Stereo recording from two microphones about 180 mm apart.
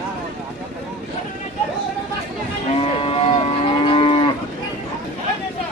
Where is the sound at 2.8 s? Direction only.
30° left (ahead or behind).